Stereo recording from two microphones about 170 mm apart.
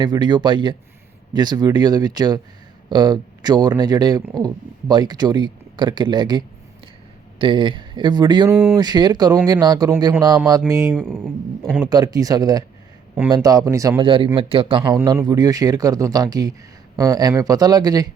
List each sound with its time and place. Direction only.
0.0 s speech: 25° right (ahead or behind)
8.4 s speech: 15° right (ahead or behind)
8.8 s speech: 25° right (ahead or behind)